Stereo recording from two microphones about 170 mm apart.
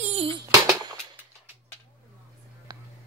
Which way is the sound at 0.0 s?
35° right (ahead or behind).